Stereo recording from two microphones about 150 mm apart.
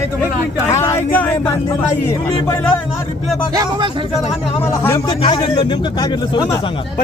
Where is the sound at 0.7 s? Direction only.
15° left (ahead or behind).